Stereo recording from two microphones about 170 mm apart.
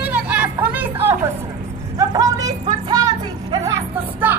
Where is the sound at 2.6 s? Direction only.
25° right (ahead or behind).